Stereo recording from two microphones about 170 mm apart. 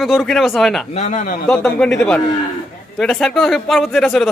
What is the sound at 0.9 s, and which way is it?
Speech, 45° left (ahead or behind).